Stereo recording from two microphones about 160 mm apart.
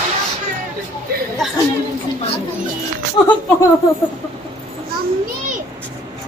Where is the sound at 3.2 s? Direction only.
30° left (ahead or behind).